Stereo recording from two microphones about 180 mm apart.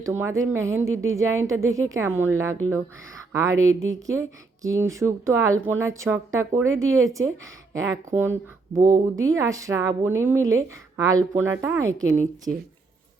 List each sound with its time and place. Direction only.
0.0 s speech: 15° right (ahead or behind)
3.8 s speech: 15° right (ahead or behind)